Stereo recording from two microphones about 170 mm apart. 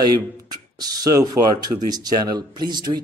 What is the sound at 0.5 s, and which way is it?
A man's voice, 20° right (ahead or behind).